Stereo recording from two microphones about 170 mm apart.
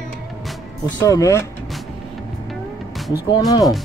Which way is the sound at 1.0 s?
20° left (ahead or behind).